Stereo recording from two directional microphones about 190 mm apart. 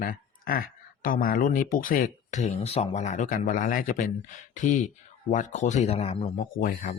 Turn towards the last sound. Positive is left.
turn(degrees=45)  # may be behind; listen again after turning